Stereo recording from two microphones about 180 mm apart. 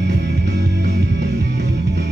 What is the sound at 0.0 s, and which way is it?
Music, 70° right (ahead or behind).